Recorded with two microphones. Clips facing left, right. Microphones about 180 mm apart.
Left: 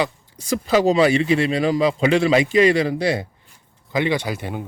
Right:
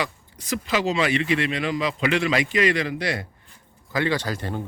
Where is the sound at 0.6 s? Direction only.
35° left (ahead or behind).